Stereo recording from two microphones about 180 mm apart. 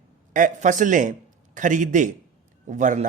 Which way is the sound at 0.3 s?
45° right (ahead or behind).